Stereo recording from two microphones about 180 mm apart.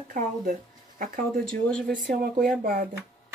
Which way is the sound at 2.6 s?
50° right (ahead or behind).